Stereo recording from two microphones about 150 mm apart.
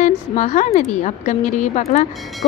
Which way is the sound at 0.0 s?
55° left (ahead or behind).